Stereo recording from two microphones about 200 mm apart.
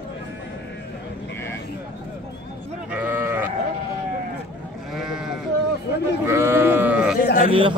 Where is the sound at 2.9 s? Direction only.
10° right (ahead or behind).